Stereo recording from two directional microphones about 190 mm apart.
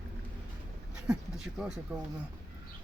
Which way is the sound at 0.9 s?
5° right (ahead or behind).